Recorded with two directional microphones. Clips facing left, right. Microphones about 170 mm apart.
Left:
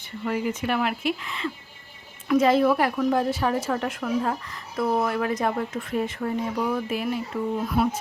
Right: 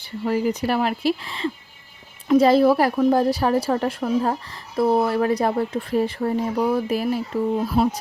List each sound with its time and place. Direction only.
0.0 s a woman's voice: 35° right (ahead or behind)